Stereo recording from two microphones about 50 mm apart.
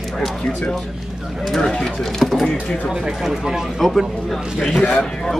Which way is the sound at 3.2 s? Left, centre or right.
Centre.